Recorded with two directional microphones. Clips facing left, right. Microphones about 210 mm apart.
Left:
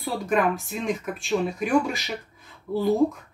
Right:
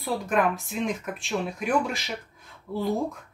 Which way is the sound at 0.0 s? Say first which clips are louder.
Left 1 dB; centre (ahead or behind).